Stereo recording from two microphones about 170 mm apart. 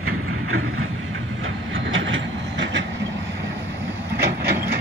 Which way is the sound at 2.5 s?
90° right.